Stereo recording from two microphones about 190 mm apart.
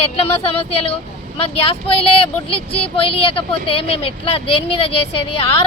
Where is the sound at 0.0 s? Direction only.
30° left (ahead or behind).